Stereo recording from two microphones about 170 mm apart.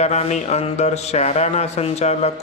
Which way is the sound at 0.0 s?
40° left (ahead or behind).